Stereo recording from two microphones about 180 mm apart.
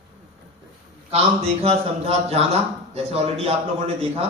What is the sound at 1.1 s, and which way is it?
A man's voice, 35° right (ahead or behind).